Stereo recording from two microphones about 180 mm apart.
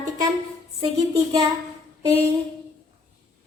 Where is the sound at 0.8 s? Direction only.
20° right (ahead or behind).